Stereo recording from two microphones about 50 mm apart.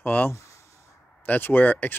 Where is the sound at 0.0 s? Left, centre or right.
Left.